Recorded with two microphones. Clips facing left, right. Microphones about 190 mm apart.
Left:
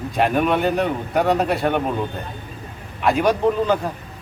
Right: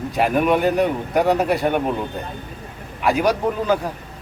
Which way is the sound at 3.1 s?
5° right (ahead or behind).